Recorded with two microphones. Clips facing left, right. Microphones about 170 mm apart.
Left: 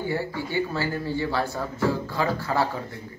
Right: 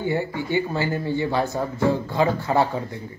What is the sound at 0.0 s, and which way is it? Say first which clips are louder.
A man's voice: right 3 dB; 20° right (ahead or behind).